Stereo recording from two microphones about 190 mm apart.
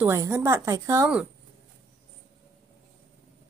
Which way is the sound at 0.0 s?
15° right (ahead or behind).